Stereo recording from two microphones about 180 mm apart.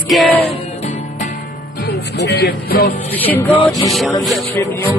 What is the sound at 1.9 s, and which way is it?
Speech, 70° left (ahead or behind).